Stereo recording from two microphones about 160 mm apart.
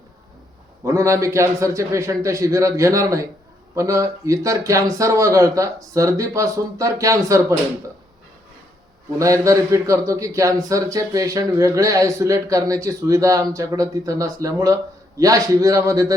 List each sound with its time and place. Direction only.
0.9 s a man's voice: 20° right (ahead or behind)
9.1 s a man's voice: 20° right (ahead or behind)